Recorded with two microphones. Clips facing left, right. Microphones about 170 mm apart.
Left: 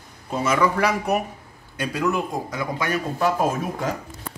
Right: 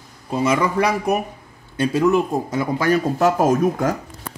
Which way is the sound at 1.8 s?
25° right (ahead or behind).